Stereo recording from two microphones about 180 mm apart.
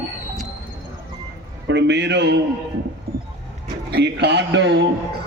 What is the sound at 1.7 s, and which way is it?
Speech, 75° right (ahead or behind).